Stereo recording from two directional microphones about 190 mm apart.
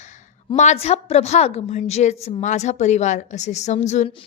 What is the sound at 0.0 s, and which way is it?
A woman's voice, 40° left (ahead or behind).